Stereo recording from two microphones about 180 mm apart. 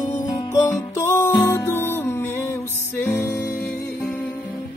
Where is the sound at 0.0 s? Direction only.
40° left (ahead or behind).